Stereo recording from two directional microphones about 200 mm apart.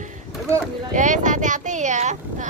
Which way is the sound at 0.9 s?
40° right (ahead or behind).